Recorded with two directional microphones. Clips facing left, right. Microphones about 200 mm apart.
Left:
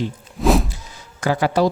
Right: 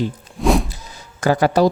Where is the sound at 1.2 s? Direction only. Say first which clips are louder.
Right 3 dB; 40° right (ahead or behind).